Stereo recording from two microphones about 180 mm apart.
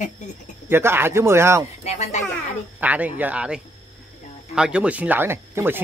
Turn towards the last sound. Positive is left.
turn(degrees=-10)  # may be behind; listen again after turning